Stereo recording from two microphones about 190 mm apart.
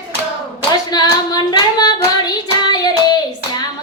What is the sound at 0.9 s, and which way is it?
Female singing, 20° left (ahead or behind).